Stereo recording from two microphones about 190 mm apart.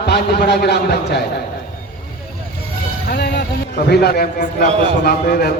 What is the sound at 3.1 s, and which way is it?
A man's voice, 55° left (ahead or behind).